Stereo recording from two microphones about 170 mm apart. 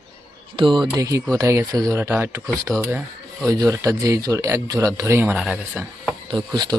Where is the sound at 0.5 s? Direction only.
30° right (ahead or behind).